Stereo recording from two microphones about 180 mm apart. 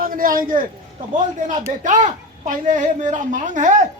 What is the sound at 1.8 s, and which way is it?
A woman's voice, 40° right (ahead or behind).